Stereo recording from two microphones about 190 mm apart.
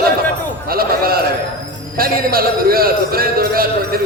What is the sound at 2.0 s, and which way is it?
A man's voice, 50° right (ahead or behind).